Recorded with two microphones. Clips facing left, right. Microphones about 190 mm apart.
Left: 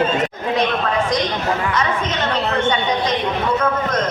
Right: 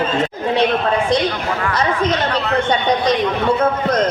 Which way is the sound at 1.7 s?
35° right (ahead or behind).